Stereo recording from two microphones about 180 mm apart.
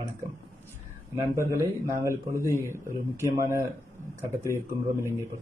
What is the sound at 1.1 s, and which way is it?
A man's voice, 15° right (ahead or behind).